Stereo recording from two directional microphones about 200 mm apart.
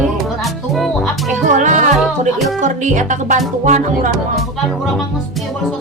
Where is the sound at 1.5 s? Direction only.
40° right (ahead or behind).